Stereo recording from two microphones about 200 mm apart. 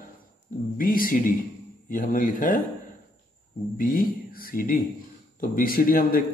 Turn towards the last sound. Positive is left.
turn(degrees=45)  # may be behind; listen again after turning